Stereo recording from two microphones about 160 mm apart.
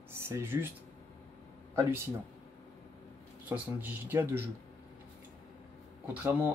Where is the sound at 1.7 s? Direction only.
15° right (ahead or behind).